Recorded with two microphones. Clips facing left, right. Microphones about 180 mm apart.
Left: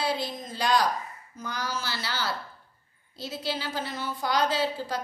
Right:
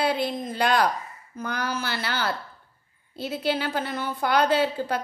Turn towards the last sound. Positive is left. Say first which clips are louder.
# right 5 dB
turn(degrees=-60)  # may be behind; listen again after turning